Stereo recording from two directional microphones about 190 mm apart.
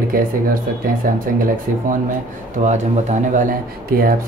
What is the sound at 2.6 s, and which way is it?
Speech, 40° right (ahead or behind).